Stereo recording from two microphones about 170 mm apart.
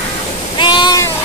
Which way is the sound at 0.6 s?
25° left (ahead or behind).